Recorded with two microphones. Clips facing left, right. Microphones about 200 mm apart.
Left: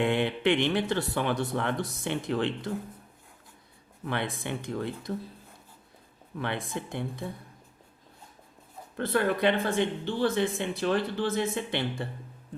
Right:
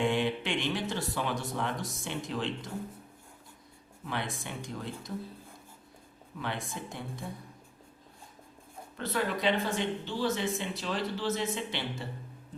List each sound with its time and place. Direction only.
0.0 s speech: 60° left (ahead or behind)
4.0 s speech: 60° left (ahead or behind)
6.4 s speech: 60° left (ahead or behind)
9.0 s speech: 55° left (ahead or behind)